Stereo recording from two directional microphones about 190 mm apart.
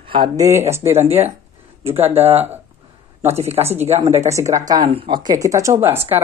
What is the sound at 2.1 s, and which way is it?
A man's voice, 35° right (ahead or behind).